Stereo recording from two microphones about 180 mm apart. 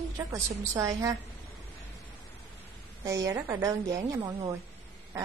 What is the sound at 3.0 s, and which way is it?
A woman's voice, 20° right (ahead or behind).